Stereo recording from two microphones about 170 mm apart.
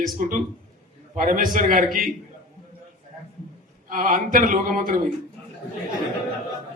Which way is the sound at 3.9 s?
55° right (ahead or behind).